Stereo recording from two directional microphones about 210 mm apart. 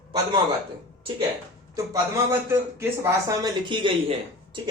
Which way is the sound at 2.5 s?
15° right (ahead or behind).